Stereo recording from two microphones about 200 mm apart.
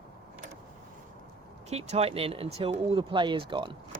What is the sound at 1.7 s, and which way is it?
Speech, 30° right (ahead or behind).